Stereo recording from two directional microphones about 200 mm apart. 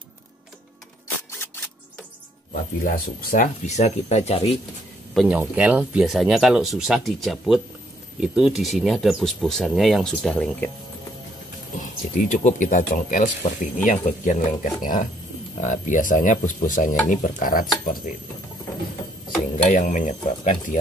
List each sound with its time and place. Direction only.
2.5 s speech: 45° left (ahead or behind)
5.1 s speech: 5° right (ahead or behind)
11.8 s speech: 40° left (ahead or behind)
19.7 s speech: 40° left (ahead or behind)